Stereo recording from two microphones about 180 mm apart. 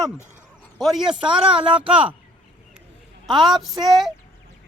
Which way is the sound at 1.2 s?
30° right (ahead or behind).